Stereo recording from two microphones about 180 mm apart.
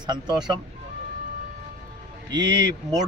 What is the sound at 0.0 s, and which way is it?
Speech, 25° right (ahead or behind).